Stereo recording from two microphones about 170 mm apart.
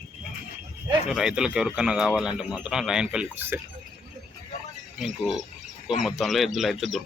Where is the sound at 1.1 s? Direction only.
5° right (ahead or behind).